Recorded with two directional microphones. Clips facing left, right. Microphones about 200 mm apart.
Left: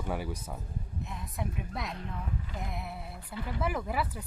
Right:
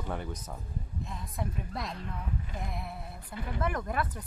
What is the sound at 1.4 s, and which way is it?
Speech, centre (ahead or behind).